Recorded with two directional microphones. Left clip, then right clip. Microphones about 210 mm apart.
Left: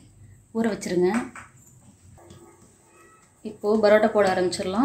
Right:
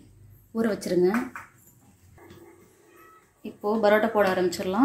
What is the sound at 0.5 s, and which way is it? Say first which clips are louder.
Speech: even; centre (ahead or behind).